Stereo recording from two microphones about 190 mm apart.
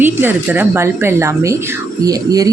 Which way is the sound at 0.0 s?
10° right (ahead or behind).